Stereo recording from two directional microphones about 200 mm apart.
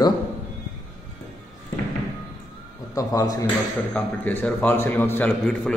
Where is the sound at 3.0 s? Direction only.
15° left (ahead or behind).